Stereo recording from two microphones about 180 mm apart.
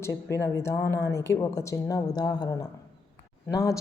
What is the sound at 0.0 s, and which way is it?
A woman's voice, 15° left (ahead or behind).